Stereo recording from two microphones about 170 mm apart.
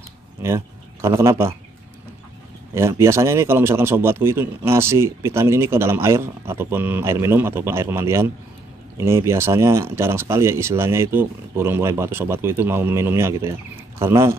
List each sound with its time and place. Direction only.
0.4 s speech: 15° right (ahead or behind)
2.7 s a man's voice: 15° right (ahead or behind)